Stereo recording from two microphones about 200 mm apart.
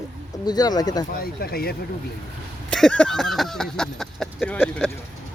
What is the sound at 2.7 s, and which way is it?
Speech, 5° left (ahead or behind).